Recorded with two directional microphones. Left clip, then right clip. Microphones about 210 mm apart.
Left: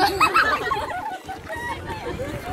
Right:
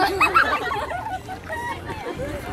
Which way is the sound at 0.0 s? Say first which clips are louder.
Even; 50° left (ahead or behind).